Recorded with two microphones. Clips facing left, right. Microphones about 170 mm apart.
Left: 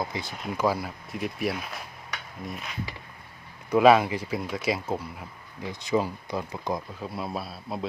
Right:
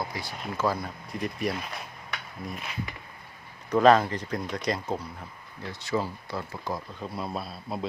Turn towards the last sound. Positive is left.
turn(degrees=0)  # may be behind; listen again after turning